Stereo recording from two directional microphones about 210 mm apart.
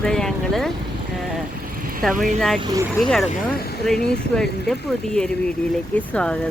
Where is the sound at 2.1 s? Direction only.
35° right (ahead or behind).